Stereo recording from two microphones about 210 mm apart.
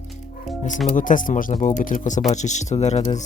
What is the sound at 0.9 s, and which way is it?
Speech, 40° left (ahead or behind).